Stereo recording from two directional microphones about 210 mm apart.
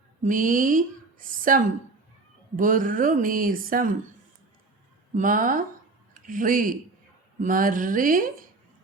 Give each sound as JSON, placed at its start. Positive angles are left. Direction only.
{"t": 0.2, "sound": "a woman's voice", "side_deg": -40}
{"t": 5.1, "sound": "a woman's voice", "side_deg": -40}